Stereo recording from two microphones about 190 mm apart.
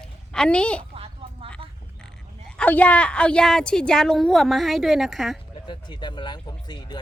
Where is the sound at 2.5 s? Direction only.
5° left (ahead or behind).